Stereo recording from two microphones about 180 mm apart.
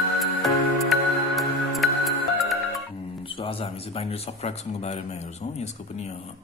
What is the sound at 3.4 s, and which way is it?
A man's voice, 30° left (ahead or behind).